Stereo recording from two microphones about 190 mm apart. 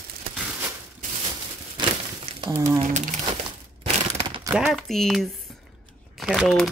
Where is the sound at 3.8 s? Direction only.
30° right (ahead or behind).